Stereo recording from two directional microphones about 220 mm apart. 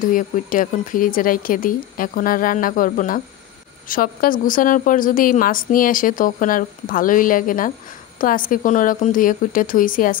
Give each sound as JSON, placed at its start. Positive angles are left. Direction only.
{"t": 0.0, "sound": "a woman's voice", "side_deg": 40}